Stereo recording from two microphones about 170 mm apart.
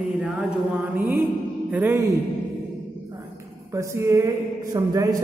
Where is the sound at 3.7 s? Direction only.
15° right (ahead or behind).